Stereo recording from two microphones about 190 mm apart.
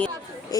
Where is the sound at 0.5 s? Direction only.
20° left (ahead or behind).